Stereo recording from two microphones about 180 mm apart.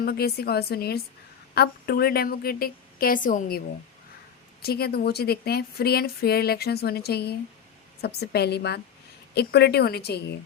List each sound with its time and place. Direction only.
0.0 s a woman's voice: 60° left (ahead or behind)
4.6 s a woman's voice: 60° left (ahead or behind)